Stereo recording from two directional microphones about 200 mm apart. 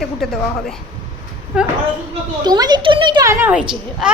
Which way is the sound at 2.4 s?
20° right (ahead or behind).